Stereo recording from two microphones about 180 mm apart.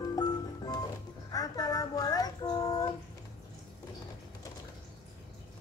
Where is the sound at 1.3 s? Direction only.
20° left (ahead or behind).